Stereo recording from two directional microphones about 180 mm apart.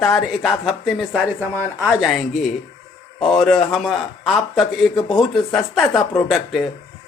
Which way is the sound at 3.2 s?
Centre (ahead or behind).